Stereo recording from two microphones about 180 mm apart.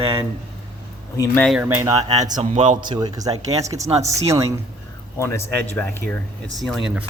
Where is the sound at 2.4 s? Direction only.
40° right (ahead or behind).